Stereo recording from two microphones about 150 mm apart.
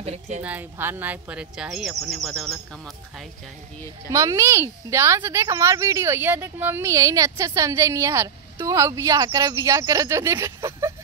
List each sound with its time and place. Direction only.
0.0 s speech: 45° right (ahead or behind)
0.4 s speech: 10° right (ahead or behind)
4.1 s a woman's voice: 20° right (ahead or behind)